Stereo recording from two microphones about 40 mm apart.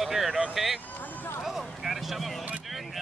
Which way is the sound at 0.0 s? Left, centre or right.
Centre.